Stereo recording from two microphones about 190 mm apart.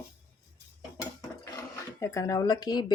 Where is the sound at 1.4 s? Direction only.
15° left (ahead or behind).